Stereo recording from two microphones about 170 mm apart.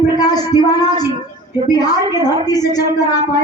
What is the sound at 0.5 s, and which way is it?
A woman's voice, 20° left (ahead or behind).